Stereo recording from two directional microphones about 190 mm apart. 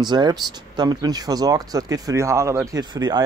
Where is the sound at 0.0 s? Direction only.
20° right (ahead or behind).